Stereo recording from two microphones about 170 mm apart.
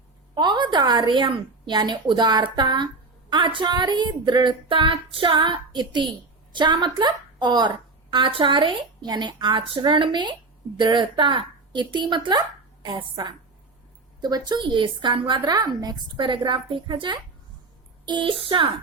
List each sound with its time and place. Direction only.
0.3 s a woman's voice: 25° right (ahead or behind)